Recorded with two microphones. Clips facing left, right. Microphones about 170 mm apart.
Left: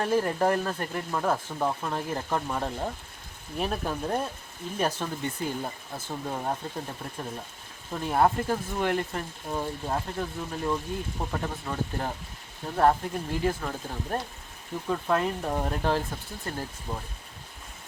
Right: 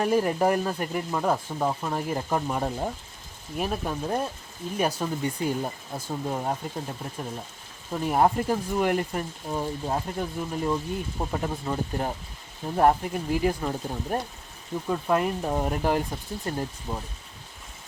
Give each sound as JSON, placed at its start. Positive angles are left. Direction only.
{"t": 0.0, "sound": "speech", "side_deg": -15}
{"t": 7.9, "sound": "speech", "side_deg": -15}